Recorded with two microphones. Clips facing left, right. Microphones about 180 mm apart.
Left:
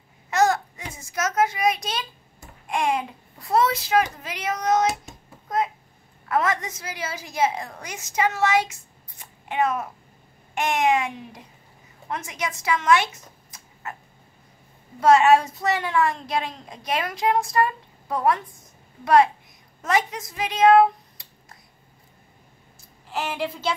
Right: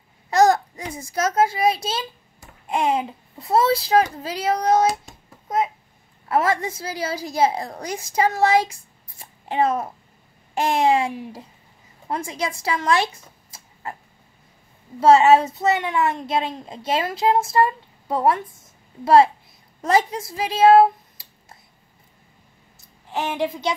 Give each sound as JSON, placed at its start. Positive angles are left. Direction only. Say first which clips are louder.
{"t": 0.3, "sound": "a child's voice", "louder": "right 4 dB", "side_deg": -35}
{"t": 6.2, "sound": "a woman's voice", "louder": "right 3 dB", "side_deg": -30}
{"t": 9.2, "sound": "a sound", "louder": "right 3 dB", "side_deg": -30}
{"t": 10.5, "sound": "a woman's voice", "louder": "right 3 dB", "side_deg": -30}
{"t": 15.0, "sound": "a child's voice", "louder": "right 3 dB", "side_deg": -25}
{"t": 19.8, "sound": "a woman's voice", "louder": "right 4 dB", "side_deg": -30}
{"t": 23.3, "sound": "speech", "louder": "right 5 dB", "side_deg": -15}